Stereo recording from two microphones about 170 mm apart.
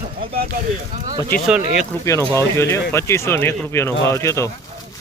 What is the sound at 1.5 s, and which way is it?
Speech, 5° right (ahead or behind).